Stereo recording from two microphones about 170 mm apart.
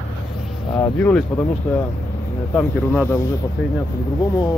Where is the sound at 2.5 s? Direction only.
15° left (ahead or behind).